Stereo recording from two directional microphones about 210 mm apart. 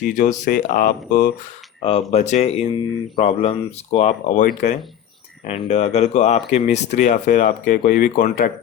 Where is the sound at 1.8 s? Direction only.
30° left (ahead or behind).